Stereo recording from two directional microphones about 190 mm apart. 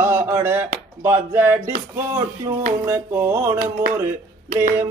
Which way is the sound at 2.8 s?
15° right (ahead or behind).